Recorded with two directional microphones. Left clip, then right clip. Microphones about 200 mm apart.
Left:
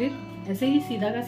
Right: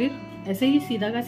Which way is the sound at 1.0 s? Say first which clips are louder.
Even; 30° right (ahead or behind).